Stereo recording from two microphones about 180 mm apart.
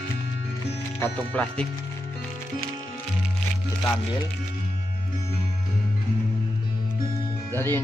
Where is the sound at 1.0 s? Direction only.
5° left (ahead or behind).